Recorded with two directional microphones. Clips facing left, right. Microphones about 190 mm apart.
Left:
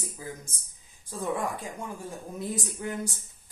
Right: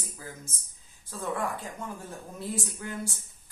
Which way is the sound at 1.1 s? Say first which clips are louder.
Left 2 dB; 15° left (ahead or behind).